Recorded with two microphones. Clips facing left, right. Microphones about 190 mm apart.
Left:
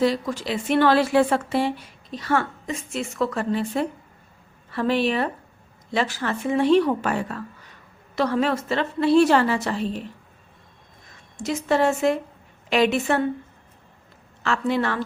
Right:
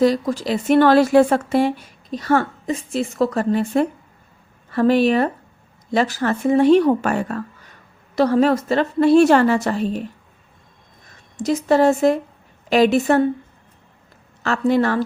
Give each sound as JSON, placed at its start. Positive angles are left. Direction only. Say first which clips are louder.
{"t": 0.0, "sound": "a woman's voice", "louder": "right 5 dB", "side_deg": -40}
{"t": 11.3, "sound": "a woman's voice", "louder": "right 5 dB", "side_deg": -40}
{"t": 14.4, "sound": "a woman's voice", "louder": "right 5 dB", "side_deg": -40}